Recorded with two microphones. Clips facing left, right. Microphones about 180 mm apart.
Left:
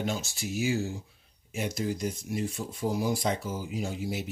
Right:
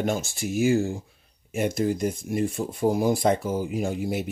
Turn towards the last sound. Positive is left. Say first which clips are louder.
# right 6 dB
turn(degrees=-55)  # may be behind; listen again after turning